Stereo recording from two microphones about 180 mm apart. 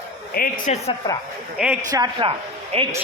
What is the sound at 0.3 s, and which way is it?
Speech, 50° left (ahead or behind).